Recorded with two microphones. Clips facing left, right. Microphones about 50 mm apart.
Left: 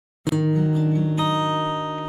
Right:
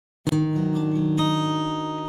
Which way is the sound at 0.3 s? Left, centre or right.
Centre.